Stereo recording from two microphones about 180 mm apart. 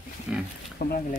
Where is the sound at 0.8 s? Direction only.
60° left (ahead or behind).